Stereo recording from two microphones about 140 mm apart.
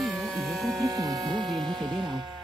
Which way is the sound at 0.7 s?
25° right (ahead or behind).